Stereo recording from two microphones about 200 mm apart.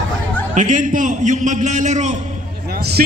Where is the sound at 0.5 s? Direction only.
40° right (ahead or behind).